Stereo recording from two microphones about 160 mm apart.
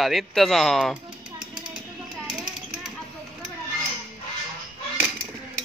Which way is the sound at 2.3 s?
Centre (ahead or behind).